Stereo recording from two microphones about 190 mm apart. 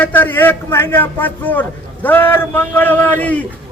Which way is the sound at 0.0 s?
10° left (ahead or behind).